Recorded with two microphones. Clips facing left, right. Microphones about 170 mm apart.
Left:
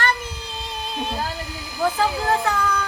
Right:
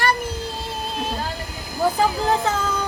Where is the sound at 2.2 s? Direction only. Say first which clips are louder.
Even; 20° right (ahead or behind).